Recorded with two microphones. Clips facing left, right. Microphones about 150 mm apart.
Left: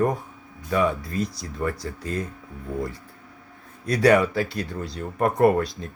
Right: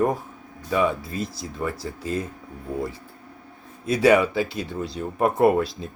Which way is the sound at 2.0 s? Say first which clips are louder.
Right 3 dB; 25° right (ahead or behind).